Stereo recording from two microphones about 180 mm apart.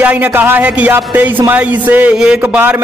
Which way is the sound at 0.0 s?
10° right (ahead or behind).